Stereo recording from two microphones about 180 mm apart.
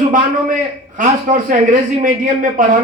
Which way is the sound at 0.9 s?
45° right (ahead or behind).